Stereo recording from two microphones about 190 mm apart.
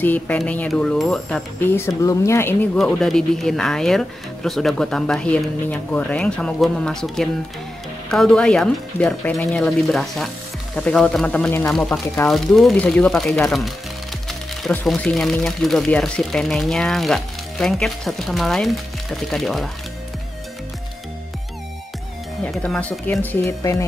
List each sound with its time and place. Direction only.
0.0 s speech: 10° left (ahead or behind)
22.5 s speech: 5° left (ahead or behind)